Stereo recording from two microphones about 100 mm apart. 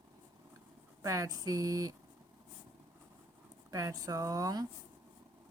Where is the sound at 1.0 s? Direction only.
35° right (ahead or behind).